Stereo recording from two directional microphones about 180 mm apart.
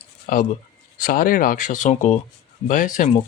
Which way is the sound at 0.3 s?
45° left (ahead or behind).